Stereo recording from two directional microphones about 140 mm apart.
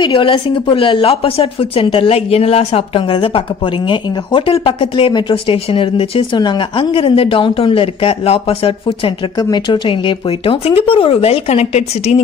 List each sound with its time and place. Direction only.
0.0 s a woman's voice: 35° left (ahead or behind)